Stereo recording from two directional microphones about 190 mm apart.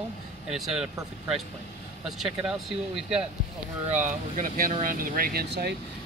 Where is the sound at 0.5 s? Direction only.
Centre (ahead or behind).